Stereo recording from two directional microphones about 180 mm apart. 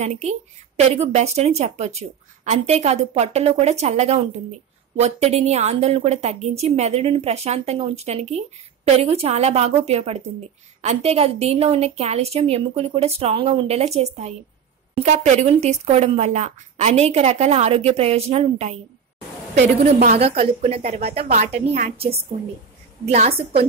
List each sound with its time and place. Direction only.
0.0 s speech: 40° right (ahead or behind)
19.8 s speech: 35° right (ahead or behind)